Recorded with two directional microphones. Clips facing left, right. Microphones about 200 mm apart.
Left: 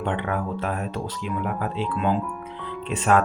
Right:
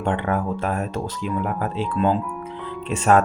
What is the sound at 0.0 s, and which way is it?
Speech, 45° right (ahead or behind).